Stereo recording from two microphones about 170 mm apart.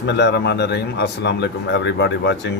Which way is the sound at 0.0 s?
90° left.